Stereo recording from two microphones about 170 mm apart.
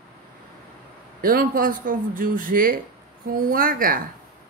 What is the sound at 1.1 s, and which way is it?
Speech, 60° right (ahead or behind).